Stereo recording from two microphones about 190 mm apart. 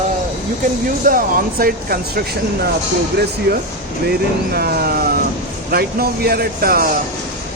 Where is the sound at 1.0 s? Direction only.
50° right (ahead or behind).